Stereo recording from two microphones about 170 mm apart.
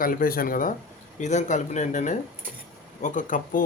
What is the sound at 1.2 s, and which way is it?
Speech, 45° left (ahead or behind).